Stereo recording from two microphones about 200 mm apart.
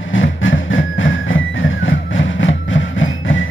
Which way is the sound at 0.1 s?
70° left (ahead or behind).